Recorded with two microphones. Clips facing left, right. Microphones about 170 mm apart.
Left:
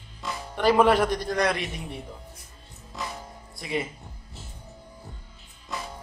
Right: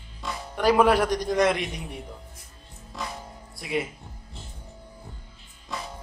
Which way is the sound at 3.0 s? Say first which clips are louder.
Even; centre (ahead or behind).